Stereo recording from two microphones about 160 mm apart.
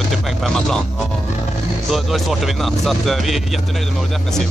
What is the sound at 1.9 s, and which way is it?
Speech, centre (ahead or behind).